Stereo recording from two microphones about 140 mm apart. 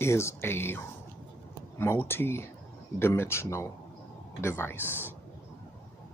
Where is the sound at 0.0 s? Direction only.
20° left (ahead or behind).